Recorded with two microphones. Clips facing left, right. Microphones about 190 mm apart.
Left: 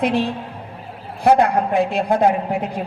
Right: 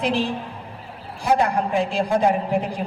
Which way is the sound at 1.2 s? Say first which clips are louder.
Left 5 dB; 60° left (ahead or behind).